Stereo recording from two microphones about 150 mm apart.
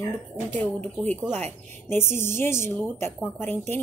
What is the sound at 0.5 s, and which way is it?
Speech, 10° left (ahead or behind).